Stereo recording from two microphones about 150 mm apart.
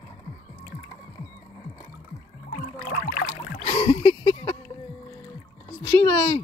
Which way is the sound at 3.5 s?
40° left (ahead or behind).